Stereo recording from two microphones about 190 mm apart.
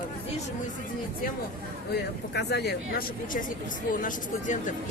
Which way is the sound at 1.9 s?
60° left (ahead or behind).